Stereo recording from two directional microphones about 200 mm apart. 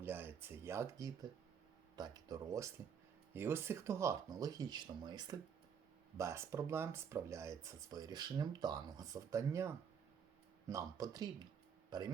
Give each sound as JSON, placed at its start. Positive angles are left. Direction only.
{"t": 0.0, "sound": "speech", "side_deg": -10}